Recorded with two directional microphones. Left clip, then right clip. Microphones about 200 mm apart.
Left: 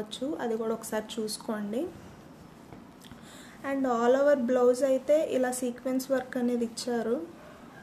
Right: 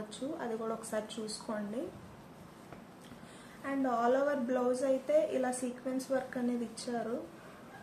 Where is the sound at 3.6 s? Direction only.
50° left (ahead or behind).